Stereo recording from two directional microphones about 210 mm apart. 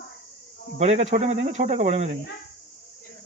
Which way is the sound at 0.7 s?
30° right (ahead or behind).